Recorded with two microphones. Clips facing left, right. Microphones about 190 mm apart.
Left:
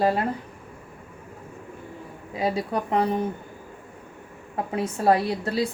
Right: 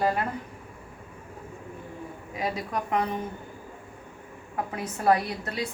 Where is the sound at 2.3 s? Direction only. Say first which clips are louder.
Left 5 dB; 30° left (ahead or behind).